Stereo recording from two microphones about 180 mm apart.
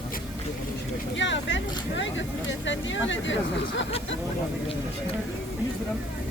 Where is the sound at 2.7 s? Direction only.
90° left.